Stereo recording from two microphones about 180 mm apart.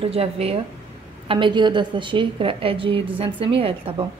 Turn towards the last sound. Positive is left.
turn(degrees=-30)  # may be behind; listen again after turning